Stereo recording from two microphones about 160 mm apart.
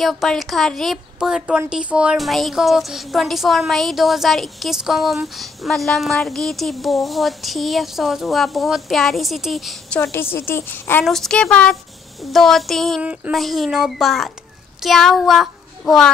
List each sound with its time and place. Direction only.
0.0 s speech: centre (ahead or behind)
10.3 s a woman's voice: 15° left (ahead or behind)